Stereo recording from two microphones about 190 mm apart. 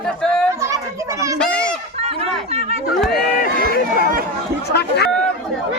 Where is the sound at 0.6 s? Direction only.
15° right (ahead or behind).